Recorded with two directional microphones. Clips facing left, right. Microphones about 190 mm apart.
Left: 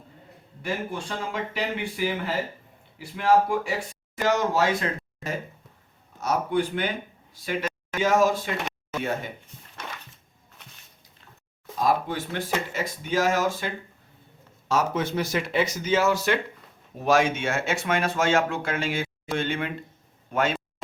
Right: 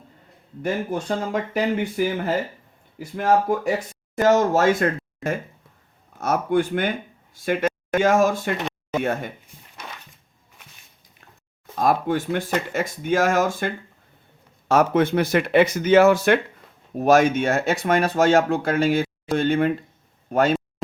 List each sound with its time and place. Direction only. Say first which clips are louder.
0.6 s speech: right 6 dB; 45° right (ahead or behind)
11.8 s speech: right 4 dB; 50° right (ahead or behind)
17.0 s speech: right 5 dB; 45° right (ahead or behind)